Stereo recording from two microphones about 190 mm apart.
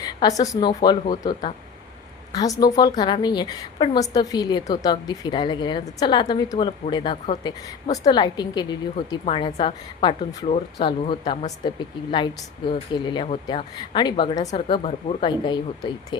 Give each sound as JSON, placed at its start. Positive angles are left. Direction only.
{"t": 0.0, "sound": "a woman's voice", "side_deg": 20}